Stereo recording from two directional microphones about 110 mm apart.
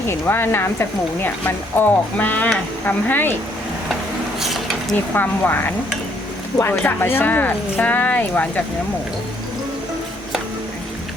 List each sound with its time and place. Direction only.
0.1 s speech: 20° left (ahead or behind)
4.4 s a sound: centre (ahead or behind)
5.1 s speech: 15° left (ahead or behind)